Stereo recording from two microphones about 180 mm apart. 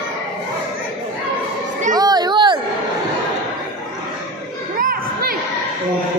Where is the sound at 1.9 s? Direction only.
20° right (ahead or behind).